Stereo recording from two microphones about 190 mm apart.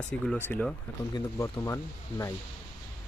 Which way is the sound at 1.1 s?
15° left (ahead or behind).